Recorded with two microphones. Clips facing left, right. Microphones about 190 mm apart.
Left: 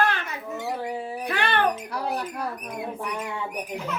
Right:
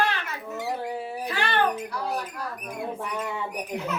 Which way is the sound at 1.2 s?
60° left (ahead or behind).